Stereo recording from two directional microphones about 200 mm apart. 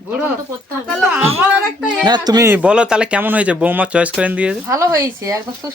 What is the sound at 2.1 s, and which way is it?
Speech, 20° right (ahead or behind).